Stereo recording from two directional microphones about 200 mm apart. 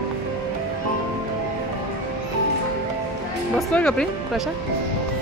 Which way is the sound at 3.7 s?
5° left (ahead or behind).